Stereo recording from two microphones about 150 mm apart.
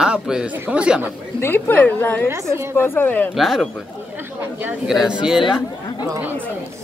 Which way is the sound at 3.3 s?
Centre (ahead or behind).